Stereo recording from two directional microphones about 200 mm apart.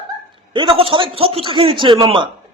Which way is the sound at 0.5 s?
25° right (ahead or behind).